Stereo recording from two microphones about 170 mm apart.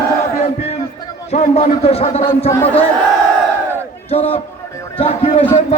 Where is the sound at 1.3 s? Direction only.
40° left (ahead or behind).